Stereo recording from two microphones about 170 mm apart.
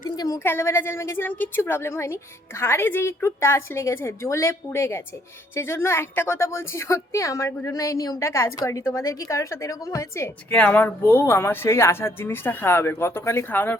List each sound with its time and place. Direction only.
0.2 s a woman's voice: 15° left (ahead or behind)